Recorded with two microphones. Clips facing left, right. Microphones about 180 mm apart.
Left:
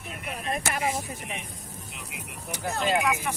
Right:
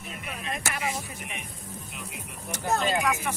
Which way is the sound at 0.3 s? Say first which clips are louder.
Left 4 dB; 40° left (ahead or behind).